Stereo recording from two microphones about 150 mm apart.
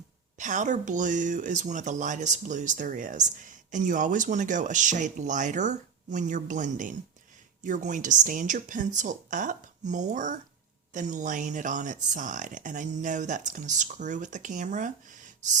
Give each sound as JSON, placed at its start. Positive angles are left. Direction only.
{"t": 0.3, "sound": "speech", "side_deg": -55}